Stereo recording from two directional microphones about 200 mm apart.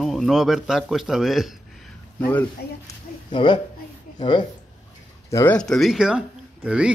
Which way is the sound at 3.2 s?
25° left (ahead or behind).